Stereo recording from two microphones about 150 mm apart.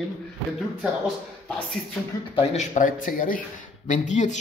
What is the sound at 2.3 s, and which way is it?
Speech, 50° left (ahead or behind).